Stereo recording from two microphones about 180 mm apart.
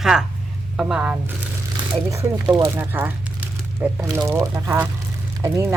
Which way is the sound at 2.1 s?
20° right (ahead or behind).